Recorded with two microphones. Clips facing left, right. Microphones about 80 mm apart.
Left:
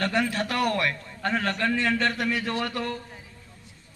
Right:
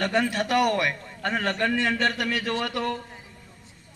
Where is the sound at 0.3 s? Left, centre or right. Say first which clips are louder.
Right 3 dB; centre.